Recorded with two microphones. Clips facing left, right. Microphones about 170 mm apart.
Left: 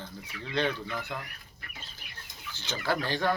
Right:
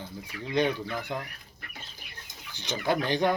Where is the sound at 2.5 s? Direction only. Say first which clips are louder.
Right 3 dB; 15° right (ahead or behind).